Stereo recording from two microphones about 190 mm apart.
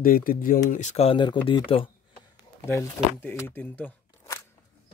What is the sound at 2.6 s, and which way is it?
Speech, 15° left (ahead or behind).